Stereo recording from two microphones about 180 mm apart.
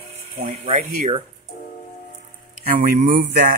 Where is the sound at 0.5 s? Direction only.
40° right (ahead or behind).